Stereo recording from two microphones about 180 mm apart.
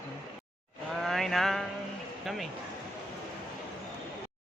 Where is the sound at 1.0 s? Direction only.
Centre (ahead or behind).